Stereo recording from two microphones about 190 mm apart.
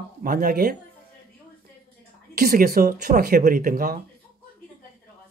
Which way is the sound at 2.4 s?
50° right (ahead or behind).